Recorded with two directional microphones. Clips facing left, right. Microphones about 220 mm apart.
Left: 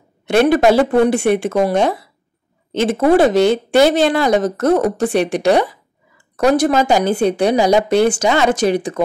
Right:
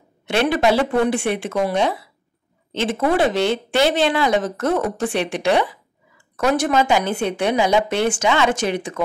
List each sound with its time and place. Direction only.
0.3 s a woman's voice: 45° left (ahead or behind)